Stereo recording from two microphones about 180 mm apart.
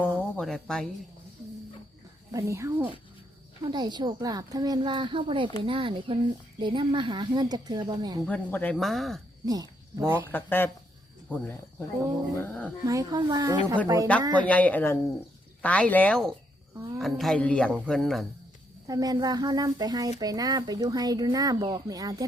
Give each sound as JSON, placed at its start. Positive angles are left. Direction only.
{"t": 0.2, "sound": "music", "side_deg": 5}
{"t": 2.3, "sound": "speech", "side_deg": -15}
{"t": 3.6, "sound": "speech", "side_deg": -25}
{"t": 8.3, "sound": "speech", "side_deg": 10}
{"t": 9.5, "sound": "a sound", "side_deg": -20}
{"t": 10.3, "sound": "speech", "side_deg": 10}
{"t": 12.9, "sound": "speech", "side_deg": -20}
{"t": 14.4, "sound": "speech", "side_deg": 10}
{"t": 16.7, "sound": "a sound", "side_deg": -15}
{"t": 17.0, "sound": "speech", "side_deg": 0}
{"t": 18.9, "sound": "speech", "side_deg": -20}